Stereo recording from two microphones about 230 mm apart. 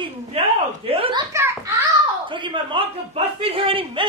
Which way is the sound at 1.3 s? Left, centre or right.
Centre.